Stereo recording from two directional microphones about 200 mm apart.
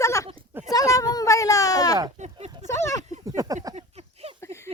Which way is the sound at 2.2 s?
30° right (ahead or behind).